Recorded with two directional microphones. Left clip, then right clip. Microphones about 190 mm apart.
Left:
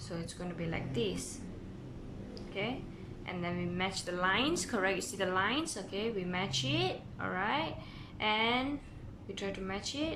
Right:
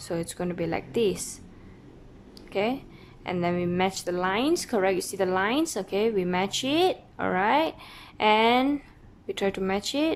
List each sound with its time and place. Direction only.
0.1 s a woman's voice: 40° right (ahead or behind)
2.5 s a woman's voice: 35° right (ahead or behind)